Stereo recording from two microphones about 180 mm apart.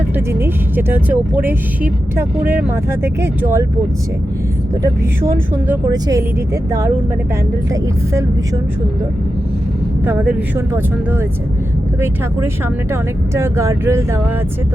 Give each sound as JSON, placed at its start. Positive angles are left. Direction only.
{"t": 0.3, "sound": "speech", "side_deg": -10}
{"t": 4.8, "sound": "speech", "side_deg": -10}
{"t": 10.1, "sound": "speech", "side_deg": -10}
{"t": 12.9, "sound": "speech", "side_deg": -15}